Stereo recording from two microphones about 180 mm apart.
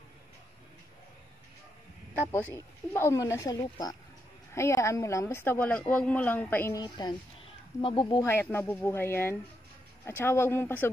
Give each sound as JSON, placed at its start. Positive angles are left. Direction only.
{"t": 2.3, "sound": "a woman's voice", "side_deg": 15}
{"t": 8.3, "sound": "a woman's voice", "side_deg": 10}